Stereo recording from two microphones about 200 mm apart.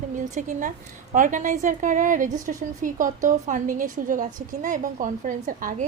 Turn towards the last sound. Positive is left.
turn(degrees=-40)  # may be behind; listen again after turning